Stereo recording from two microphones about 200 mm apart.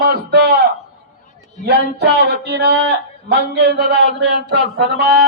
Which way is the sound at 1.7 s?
55° right (ahead or behind).